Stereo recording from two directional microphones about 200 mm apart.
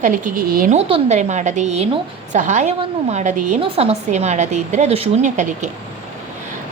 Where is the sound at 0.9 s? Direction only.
35° right (ahead or behind).